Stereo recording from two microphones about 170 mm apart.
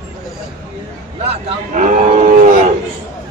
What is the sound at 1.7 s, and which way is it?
Cattle, 45° right (ahead or behind).